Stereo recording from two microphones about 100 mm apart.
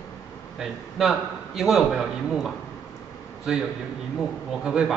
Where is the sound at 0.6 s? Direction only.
5° right (ahead or behind).